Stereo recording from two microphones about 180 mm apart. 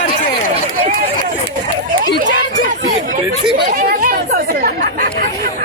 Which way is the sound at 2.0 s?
55° right (ahead or behind).